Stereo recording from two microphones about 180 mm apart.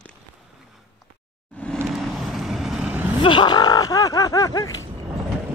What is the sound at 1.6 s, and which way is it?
Vehicle, 10° left (ahead or behind).